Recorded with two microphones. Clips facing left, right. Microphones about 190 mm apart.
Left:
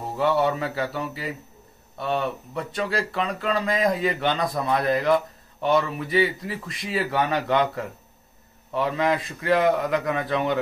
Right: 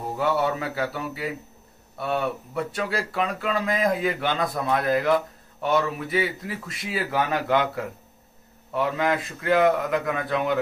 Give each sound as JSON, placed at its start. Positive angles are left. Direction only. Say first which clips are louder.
{"t": 0.2, "sound": "speech", "louder": "left 2 dB", "side_deg": 0}